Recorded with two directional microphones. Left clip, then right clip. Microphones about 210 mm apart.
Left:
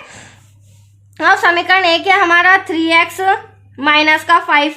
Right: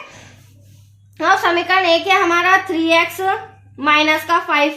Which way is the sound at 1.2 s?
45° left (ahead or behind).